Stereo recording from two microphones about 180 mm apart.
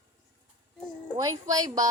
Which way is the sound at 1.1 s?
20° right (ahead or behind).